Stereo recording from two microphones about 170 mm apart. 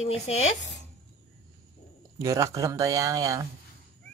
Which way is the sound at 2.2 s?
20° right (ahead or behind).